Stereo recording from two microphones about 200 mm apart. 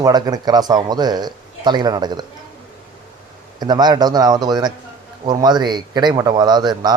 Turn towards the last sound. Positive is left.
turn(degrees=-20)  # may be behind; listen again after turning